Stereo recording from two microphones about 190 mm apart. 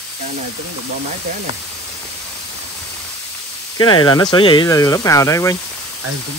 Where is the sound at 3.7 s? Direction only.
25° left (ahead or behind).